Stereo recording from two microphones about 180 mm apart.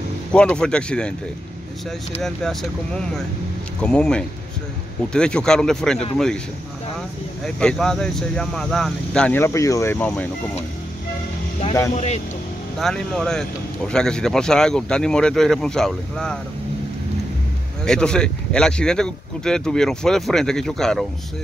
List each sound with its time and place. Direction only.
0.3 s speech: 5° left (ahead or behind)
2.2 s speech: 5° left (ahead or behind)
7.4 s speech: 5° left (ahead or behind)
11.9 s speech: 40° left (ahead or behind)
12.7 s speech: 5° left (ahead or behind)
17.8 s speech: 5° left (ahead or behind)